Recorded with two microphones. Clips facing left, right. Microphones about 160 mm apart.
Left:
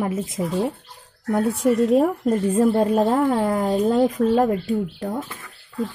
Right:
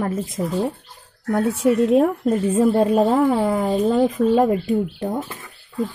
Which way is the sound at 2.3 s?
10° right (ahead or behind).